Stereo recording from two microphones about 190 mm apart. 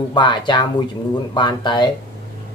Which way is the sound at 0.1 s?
25° left (ahead or behind).